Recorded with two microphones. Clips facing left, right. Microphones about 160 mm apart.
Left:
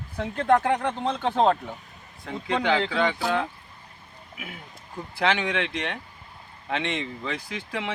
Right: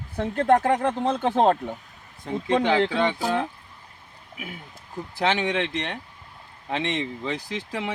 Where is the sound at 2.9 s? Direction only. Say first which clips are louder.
Right 1 dB; 20° right (ahead or behind).